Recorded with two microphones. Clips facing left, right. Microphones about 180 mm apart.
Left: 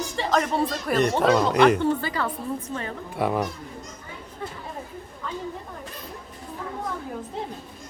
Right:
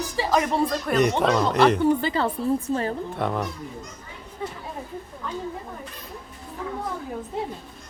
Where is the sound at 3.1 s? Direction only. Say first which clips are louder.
Left 2 dB; 5° left (ahead or behind).